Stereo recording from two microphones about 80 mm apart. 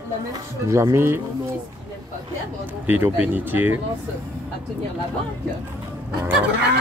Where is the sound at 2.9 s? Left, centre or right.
Right.